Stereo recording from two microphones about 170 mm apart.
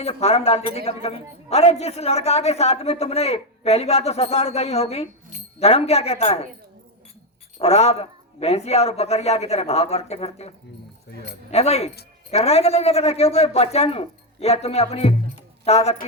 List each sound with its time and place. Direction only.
0.0 s a woman's voice: 35° left (ahead or behind)
7.6 s a woman's voice: 40° left (ahead or behind)
11.5 s a woman's voice: 40° left (ahead or behind)